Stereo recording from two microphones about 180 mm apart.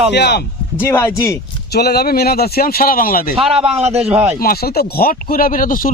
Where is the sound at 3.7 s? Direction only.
35° right (ahead or behind).